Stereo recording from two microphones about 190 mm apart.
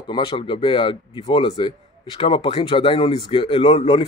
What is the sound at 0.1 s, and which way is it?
Speech, 25° left (ahead or behind).